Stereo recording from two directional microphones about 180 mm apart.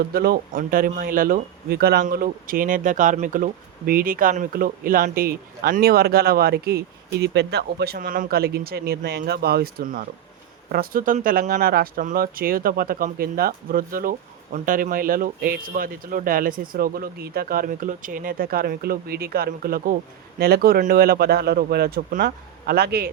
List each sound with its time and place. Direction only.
0.1 s speech: 60° right (ahead or behind)